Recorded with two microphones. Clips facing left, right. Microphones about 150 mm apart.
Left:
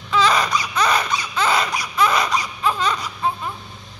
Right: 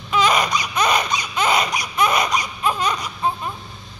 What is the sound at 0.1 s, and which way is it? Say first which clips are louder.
Baby cry: even; 15° right (ahead or behind).